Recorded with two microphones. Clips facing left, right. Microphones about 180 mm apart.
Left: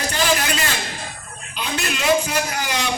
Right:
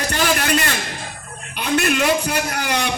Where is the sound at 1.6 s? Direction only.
55° right (ahead or behind).